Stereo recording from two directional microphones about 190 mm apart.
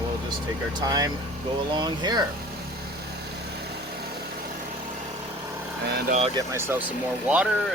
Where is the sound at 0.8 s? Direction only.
20° right (ahead or behind).